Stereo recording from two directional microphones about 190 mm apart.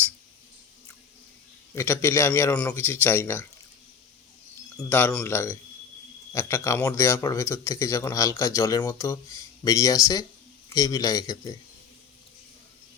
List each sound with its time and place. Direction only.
1.7 s speech: 15° left (ahead or behind)
4.8 s a man's voice: 10° left (ahead or behind)